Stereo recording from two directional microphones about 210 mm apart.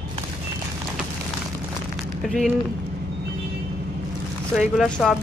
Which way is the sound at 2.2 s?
Centre (ahead or behind).